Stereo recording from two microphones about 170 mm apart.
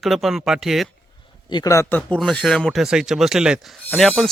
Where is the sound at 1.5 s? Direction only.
20° left (ahead or behind); by 4.2 s centre (ahead or behind).